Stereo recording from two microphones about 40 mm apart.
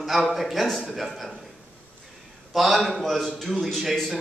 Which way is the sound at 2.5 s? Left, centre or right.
Centre.